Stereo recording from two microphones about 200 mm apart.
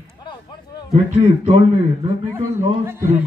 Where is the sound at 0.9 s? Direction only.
35° right (ahead or behind).